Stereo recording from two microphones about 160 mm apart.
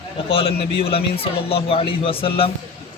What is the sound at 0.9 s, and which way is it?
Speech, 35° left (ahead or behind).